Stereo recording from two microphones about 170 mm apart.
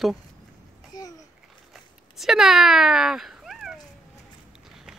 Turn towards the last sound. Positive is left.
turn(degrees=0)  # may be behind; listen again after turning